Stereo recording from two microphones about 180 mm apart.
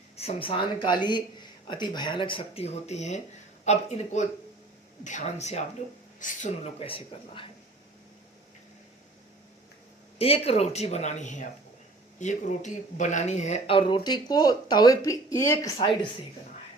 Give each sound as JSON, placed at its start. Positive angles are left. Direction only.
{"t": 0.2, "sound": "speech", "side_deg": 30}
{"t": 6.8, "sound": "speech", "side_deg": 30}
{"t": 10.2, "sound": "speech", "side_deg": 35}